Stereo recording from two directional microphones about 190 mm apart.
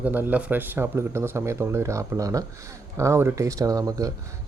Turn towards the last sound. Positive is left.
turn(degrees=-20)  # may be behind; listen again after turning